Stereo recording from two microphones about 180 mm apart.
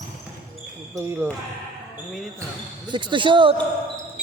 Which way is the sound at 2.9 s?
25° right (ahead or behind).